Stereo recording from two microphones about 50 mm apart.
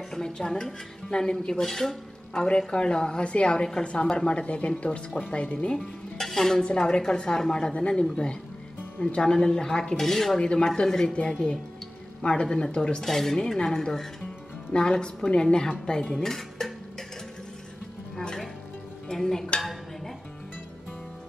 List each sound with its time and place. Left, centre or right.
0.1 s a woman's voice: centre
6.1 s stir: centre
6.6 s speech: centre
14.7 s a woman's voice: centre
16.3 s dishes: centre
18.1 s music: centre